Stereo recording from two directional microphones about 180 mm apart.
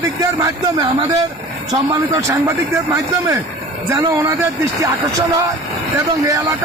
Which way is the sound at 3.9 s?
20° right (ahead or behind).